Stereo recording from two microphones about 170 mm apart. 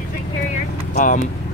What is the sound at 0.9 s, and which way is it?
Vehicle, 45° left (ahead or behind).